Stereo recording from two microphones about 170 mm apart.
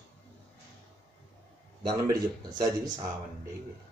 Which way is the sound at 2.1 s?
25° right (ahead or behind).